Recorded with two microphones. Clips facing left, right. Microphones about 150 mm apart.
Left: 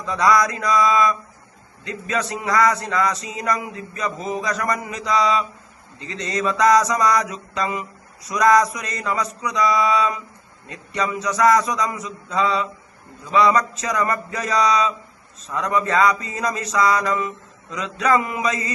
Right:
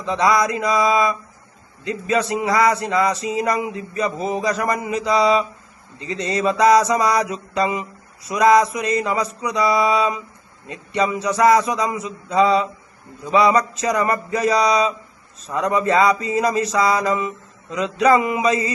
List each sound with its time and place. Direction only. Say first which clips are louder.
0.0 s mantra: even; 25° right (ahead or behind)
17.7 s a sound: right 6 dB; 35° right (ahead or behind)
18.2 s mantra: right 5 dB; 15° right (ahead or behind)
18.4 s mantra: right 5 dB; 30° right (ahead or behind)